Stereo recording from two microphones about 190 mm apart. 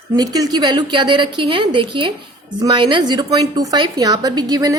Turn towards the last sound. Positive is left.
turn(degrees=-20)  # may be behind; listen again after turning